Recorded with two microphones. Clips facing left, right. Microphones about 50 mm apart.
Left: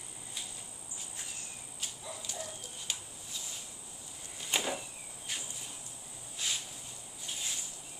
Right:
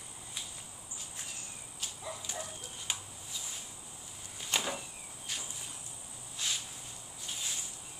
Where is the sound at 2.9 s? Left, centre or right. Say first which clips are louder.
Right 2 dB; centre.